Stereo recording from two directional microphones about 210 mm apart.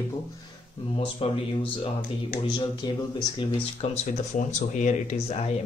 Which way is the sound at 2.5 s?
20° left (ahead or behind).